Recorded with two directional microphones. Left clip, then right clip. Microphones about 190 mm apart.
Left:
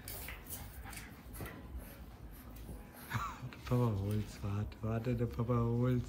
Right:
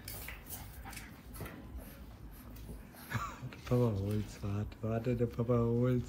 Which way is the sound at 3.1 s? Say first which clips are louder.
Even; centre (ahead or behind).